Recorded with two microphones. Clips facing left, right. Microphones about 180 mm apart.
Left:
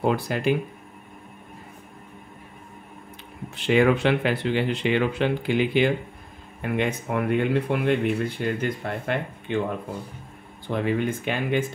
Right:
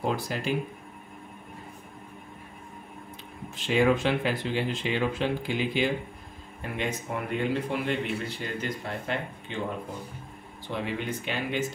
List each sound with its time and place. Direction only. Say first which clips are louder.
0.0 s speech: left 6 dB; 60° left (ahead or behind)
3.5 s speech: left 4 dB; 65° left (ahead or behind)
10.7 s speech: left 7 dB; 50° left (ahead or behind)